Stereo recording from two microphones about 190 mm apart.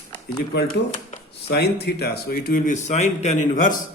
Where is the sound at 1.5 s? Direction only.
60° left (ahead or behind); by 3.8 s 45° left (ahead or behind).